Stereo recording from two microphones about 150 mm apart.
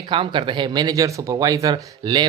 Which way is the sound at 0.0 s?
35° right (ahead or behind).